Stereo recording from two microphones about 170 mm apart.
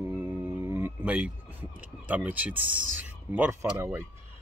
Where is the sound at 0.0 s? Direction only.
15° right (ahead or behind).